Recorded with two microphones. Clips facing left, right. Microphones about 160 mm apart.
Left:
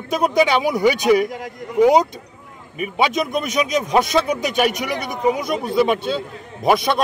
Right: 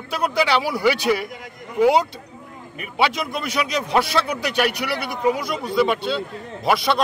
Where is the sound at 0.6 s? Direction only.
20° left (ahead or behind).